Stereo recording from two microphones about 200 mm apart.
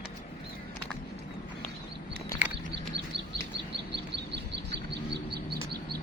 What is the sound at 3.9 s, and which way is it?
Chirp, 60° right (ahead or behind).